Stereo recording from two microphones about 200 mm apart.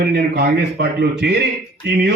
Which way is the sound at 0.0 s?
55° right (ahead or behind).